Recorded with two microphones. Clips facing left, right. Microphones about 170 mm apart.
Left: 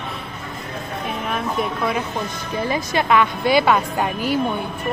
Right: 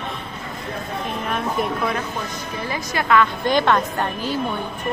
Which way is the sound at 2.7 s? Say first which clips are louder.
Left 1 dB; 20° left (ahead or behind).